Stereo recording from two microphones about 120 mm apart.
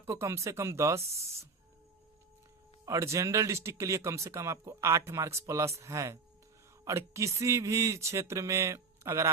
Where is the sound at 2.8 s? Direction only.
25° right (ahead or behind).